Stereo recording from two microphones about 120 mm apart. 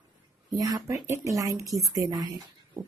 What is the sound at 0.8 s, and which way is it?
Speech, 25° right (ahead or behind).